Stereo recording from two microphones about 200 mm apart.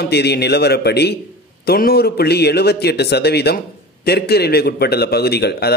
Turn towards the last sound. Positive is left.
turn(degrees=55)  # may be behind; listen again after turning